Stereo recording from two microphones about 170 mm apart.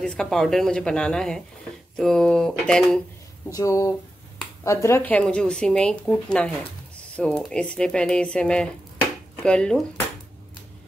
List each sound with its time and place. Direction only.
0.0 s a woman's voice: 5° left (ahead or behind)
3.4 s a woman's voice: 20° left (ahead or behind)